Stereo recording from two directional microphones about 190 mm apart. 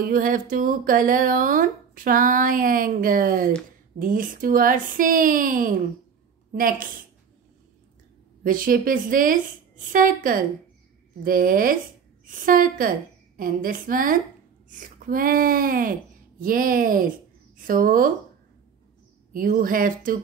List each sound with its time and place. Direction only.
0.0 s speech: 45° right (ahead or behind)
8.5 s speech: 45° right (ahead or behind)
19.3 s speech: 45° right (ahead or behind)